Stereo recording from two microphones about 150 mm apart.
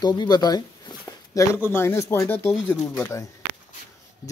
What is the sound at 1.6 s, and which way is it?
Speech, 15° left (ahead or behind).